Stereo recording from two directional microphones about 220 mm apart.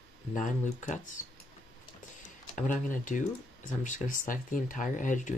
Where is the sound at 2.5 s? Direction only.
35° left (ahead or behind).